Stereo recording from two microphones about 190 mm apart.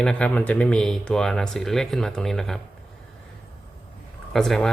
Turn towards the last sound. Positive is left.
turn(degrees=0)  # may be behind; listen again after turning